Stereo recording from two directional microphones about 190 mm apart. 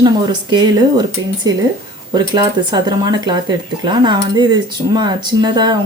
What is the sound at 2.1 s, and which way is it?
Speech, 20° right (ahead or behind).